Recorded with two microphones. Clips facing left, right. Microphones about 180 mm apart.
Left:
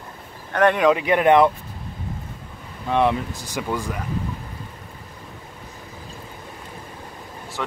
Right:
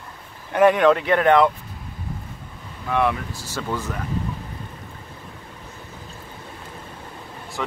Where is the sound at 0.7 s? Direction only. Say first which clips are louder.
Right 1 dB; 10° left (ahead or behind).